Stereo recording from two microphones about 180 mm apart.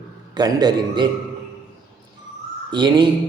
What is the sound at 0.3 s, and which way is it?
Speech, 25° right (ahead or behind).